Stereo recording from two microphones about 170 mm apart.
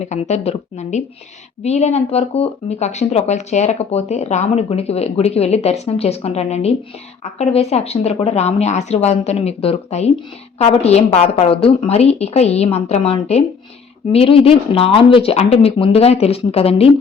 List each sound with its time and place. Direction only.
0.0 s speech: 40° left (ahead or behind)